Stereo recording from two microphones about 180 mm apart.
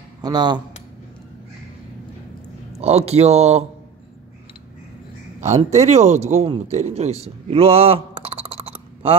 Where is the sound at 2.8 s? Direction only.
35° right (ahead or behind).